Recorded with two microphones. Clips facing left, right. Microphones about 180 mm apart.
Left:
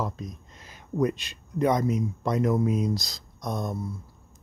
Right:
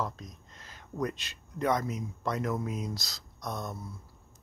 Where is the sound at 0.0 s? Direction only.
10° left (ahead or behind).